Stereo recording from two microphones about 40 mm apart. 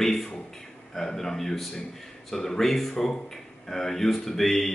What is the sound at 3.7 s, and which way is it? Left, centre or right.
Speech, centre.